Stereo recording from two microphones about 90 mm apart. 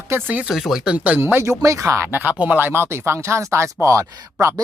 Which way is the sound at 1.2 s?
25° right (ahead or behind).